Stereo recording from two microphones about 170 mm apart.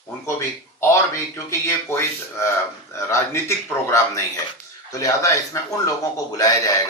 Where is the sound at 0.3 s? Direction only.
15° left (ahead or behind).